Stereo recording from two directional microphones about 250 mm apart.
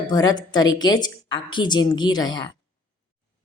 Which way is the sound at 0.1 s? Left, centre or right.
Centre.